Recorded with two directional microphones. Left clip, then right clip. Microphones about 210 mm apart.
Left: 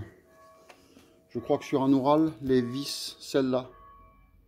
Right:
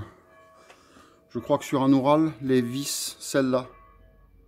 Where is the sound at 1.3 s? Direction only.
15° right (ahead or behind).